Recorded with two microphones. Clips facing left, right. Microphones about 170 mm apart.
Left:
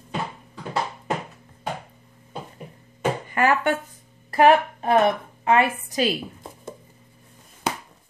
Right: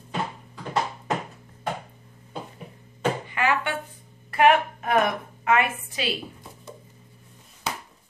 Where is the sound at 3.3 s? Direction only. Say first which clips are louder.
Left 5 dB; 45° left (ahead or behind).